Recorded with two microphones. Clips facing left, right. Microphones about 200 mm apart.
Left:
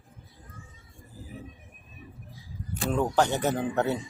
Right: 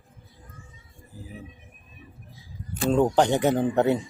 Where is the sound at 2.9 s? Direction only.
20° right (ahead or behind).